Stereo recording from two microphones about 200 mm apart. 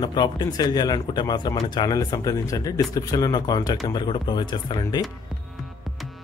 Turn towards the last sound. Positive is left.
turn(degrees=20)  # may be behind; listen again after turning